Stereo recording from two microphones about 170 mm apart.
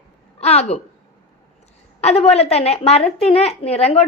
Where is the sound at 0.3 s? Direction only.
35° left (ahead or behind).